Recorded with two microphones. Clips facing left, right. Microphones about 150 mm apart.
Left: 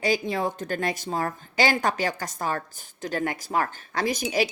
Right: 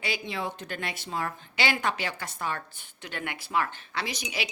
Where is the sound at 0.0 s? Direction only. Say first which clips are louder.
Left 8 dB; 45° left (ahead or behind).